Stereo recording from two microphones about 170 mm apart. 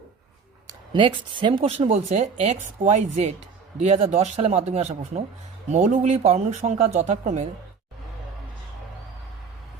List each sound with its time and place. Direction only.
0.7 s speech: 30° right (ahead or behind); by 7.4 s 45° right (ahead or behind)